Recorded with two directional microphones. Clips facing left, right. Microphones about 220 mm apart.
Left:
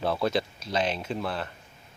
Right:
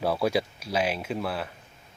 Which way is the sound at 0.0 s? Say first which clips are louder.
Right 1 dB; 10° right (ahead or behind).